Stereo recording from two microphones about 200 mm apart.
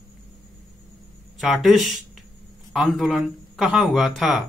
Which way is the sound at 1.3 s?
Centre (ahead or behind).